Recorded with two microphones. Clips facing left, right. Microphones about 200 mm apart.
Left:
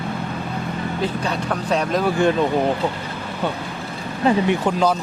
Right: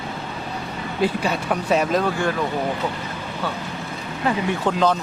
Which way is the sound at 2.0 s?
20° left (ahead or behind).